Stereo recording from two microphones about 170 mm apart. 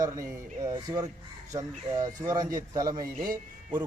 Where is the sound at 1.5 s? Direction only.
20° right (ahead or behind).